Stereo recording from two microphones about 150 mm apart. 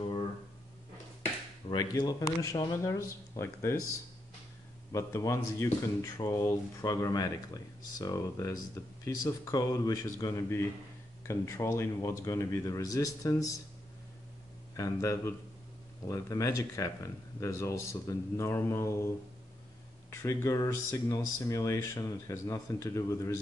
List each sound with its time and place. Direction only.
1.7 s speech: 25° left (ahead or behind)
4.9 s speech: 20° left (ahead or behind)
14.8 s speech: 20° left (ahead or behind)